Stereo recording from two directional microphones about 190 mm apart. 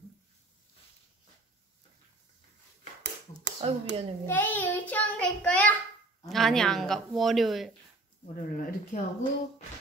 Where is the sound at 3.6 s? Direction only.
30° right (ahead or behind).